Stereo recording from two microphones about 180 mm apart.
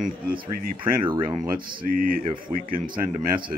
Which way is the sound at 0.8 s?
25° right (ahead or behind).